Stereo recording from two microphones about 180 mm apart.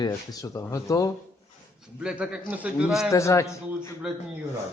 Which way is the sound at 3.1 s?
15° left (ahead or behind).